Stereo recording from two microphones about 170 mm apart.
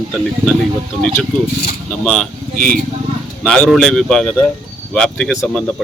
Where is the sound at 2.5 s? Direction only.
55° right (ahead or behind).